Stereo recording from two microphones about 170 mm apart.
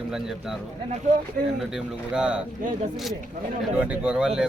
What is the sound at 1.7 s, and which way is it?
Speech, 5° right (ahead or behind).